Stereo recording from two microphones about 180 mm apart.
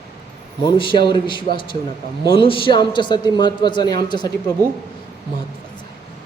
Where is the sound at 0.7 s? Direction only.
25° left (ahead or behind).